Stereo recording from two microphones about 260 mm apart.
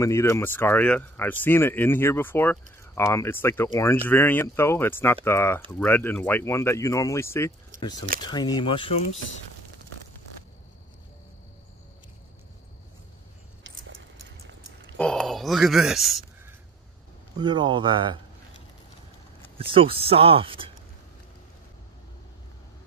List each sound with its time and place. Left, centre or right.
0.0 s speech: centre
7.7 s keys jangling: right
8.2 s speech: centre
15.0 s speech: centre
17.4 s speech: centre
19.6 s speech: right